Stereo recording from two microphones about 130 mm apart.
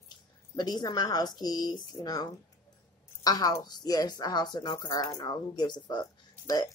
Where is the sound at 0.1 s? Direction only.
35° left (ahead or behind).